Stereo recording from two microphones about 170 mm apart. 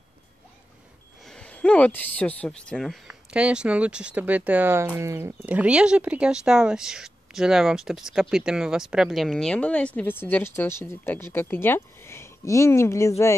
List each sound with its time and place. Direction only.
1.2 s speech: 5° left (ahead or behind)